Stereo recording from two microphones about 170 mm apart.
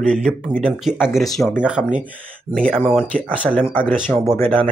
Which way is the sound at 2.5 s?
5° left (ahead or behind).